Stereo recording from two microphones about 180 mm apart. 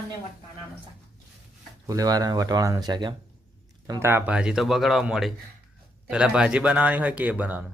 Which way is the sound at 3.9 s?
15° right (ahead or behind).